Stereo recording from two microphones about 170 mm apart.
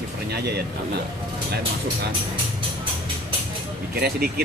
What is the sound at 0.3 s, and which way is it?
Speech, 70° right (ahead or behind).